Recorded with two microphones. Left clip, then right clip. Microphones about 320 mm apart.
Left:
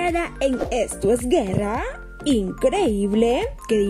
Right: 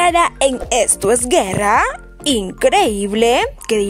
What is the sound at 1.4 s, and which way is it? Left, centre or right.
Speech, right.